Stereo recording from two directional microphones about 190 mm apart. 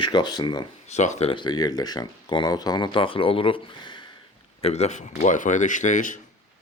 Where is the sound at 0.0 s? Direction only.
25° left (ahead or behind).